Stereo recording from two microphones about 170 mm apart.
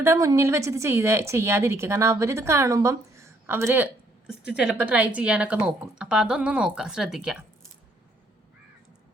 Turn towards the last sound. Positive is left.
turn(degrees=-5)  # may be behind; listen again after turning